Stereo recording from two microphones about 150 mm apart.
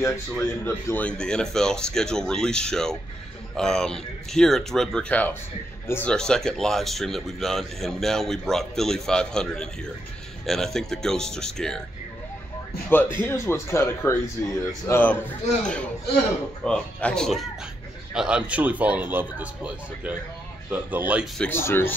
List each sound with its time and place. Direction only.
0.7 s speech: 10° left (ahead or behind)
12.9 s speech: 15° left (ahead or behind); by 21.3 s 10° right (ahead or behind)
21.4 s speech: 15° left (ahead or behind)